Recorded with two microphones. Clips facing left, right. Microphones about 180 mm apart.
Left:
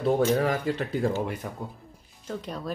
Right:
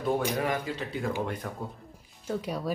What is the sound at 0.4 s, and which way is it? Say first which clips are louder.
Speech: left 4 dB; 45° left (ahead or behind).